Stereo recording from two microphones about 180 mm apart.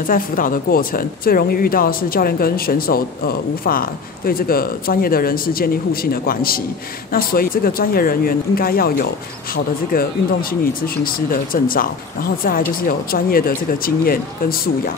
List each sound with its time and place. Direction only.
0.0 s speech: 50° left (ahead or behind)